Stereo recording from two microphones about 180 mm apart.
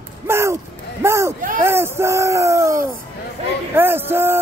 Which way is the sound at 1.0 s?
15° right (ahead or behind).